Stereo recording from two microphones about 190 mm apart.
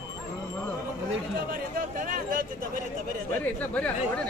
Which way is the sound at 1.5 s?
50° right (ahead or behind).